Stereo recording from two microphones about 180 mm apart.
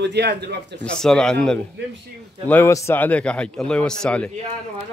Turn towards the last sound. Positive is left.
turn(degrees=5)  # may be behind; listen again after turning